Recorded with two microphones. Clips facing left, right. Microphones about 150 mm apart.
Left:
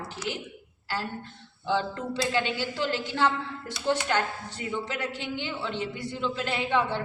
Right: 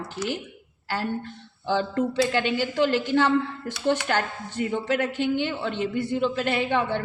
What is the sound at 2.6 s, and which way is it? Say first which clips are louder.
Speech: right 7 dB; 55° right (ahead or behind).